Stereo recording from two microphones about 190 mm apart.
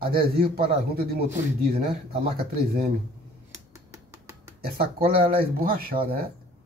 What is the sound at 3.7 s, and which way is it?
Finger snapping, 15° right (ahead or behind).